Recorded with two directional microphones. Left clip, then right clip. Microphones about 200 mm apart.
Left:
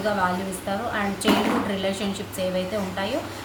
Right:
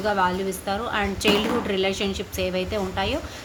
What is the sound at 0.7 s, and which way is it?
A woman's voice, 20° right (ahead or behind).